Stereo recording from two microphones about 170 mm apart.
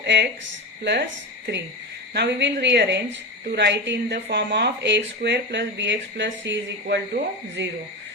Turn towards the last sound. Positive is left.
turn(degrees=-90)